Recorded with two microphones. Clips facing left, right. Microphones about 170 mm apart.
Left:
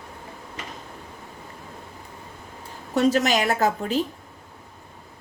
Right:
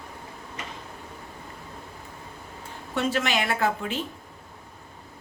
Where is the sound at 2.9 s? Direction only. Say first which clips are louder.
Left 6 dB; 40° left (ahead or behind).